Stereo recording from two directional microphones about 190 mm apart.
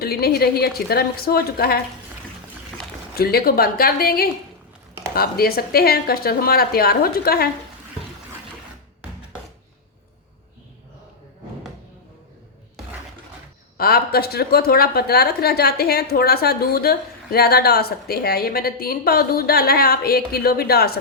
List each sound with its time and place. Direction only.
0.0 s a woman's voice: 55° left (ahead or behind)
3.2 s a woman's voice: 55° left (ahead or behind)
13.7 s a woman's voice: 55° left (ahead or behind)